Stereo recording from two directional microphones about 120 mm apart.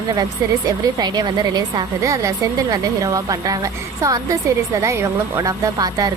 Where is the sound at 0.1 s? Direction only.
35° right (ahead or behind).